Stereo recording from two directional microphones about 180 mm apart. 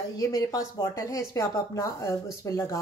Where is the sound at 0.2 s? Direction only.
20° left (ahead or behind).